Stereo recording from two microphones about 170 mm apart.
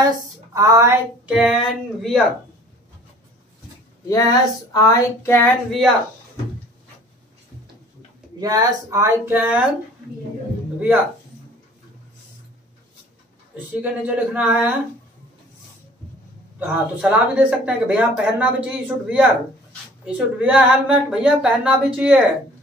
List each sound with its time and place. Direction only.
0.0 s speech: 20° right (ahead or behind)
1.3 s speech: centre (ahead or behind)
4.1 s a sound: 20° left (ahead or behind); by 5.9 s 5° left (ahead or behind)
8.4 s speech: 20° right (ahead or behind)
14.0 s speech: 10° right (ahead or behind)
16.5 s speech: 10° right (ahead or behind)